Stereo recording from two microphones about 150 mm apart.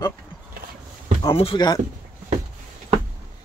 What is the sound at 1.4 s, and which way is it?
Speech, 35° left (ahead or behind).